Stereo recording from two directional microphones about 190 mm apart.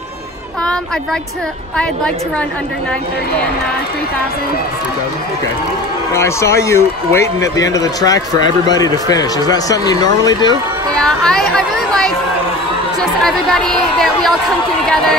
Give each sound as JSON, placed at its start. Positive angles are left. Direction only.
{"t": 6.1, "sound": "a man's voice", "side_deg": 15}
{"t": 11.0, "sound": "speech", "side_deg": 5}
{"t": 13.2, "sound": "speech", "side_deg": 5}